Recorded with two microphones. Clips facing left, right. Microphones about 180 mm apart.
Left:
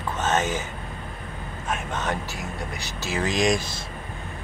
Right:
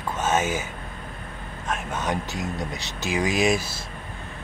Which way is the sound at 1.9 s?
15° right (ahead or behind).